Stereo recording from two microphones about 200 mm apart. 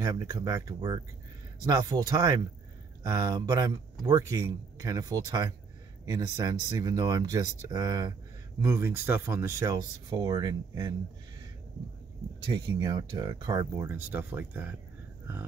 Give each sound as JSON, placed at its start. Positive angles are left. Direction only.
{"t": 0.0, "sound": "speech", "side_deg": -20}
{"t": 12.4, "sound": "speech", "side_deg": -20}